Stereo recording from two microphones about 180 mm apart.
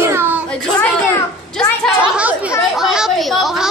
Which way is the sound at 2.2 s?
5° right (ahead or behind).